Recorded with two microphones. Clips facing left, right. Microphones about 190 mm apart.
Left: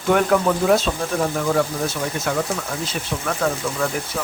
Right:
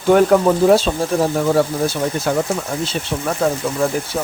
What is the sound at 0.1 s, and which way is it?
Speech, 35° right (ahead or behind).